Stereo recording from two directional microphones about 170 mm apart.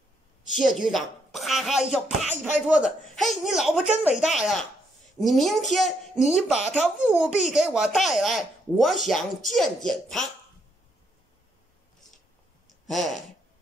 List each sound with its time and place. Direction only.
0.7 s a child's voice: centre (ahead or behind)
2.2 s speech: 40° left (ahead or behind)
3.2 s a child's voice: centre (ahead or behind)
12.8 s speech: centre (ahead or behind)